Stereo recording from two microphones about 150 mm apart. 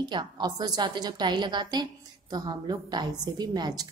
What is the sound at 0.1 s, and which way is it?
A woman's voice, 30° right (ahead or behind).